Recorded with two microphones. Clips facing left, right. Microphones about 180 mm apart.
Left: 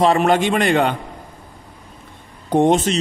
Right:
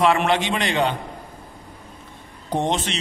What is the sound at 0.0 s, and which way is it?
Speech, 40° left (ahead or behind).